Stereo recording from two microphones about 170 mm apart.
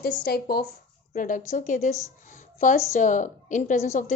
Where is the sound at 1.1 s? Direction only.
50° left (ahead or behind).